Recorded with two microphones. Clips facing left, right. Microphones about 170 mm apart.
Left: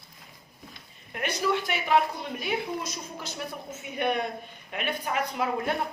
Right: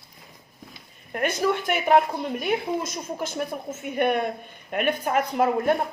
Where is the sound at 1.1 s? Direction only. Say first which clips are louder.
Right 4 dB; 50° right (ahead or behind).